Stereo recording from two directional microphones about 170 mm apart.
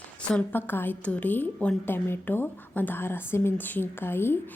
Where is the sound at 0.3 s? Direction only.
10° left (ahead or behind).